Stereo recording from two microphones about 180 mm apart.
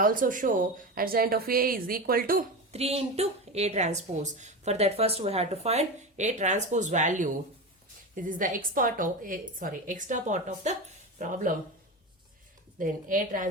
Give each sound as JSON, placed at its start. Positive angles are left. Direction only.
{"t": 0.0, "sound": "a woman's voice", "side_deg": -50}
{"t": 2.7, "sound": "a woman's voice", "side_deg": -35}
{"t": 12.8, "sound": "a woman's voice", "side_deg": -50}